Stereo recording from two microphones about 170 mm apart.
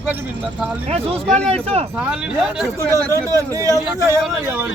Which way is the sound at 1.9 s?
5° right (ahead or behind).